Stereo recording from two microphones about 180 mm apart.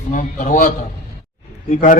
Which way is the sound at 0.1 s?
45° left (ahead or behind).